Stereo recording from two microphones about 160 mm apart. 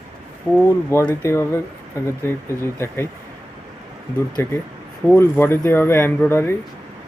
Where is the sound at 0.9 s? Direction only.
15° left (ahead or behind).